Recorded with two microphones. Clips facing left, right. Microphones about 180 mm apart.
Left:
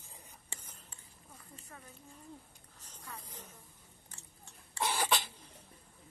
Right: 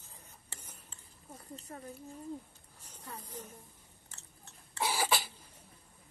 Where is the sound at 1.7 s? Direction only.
35° right (ahead or behind).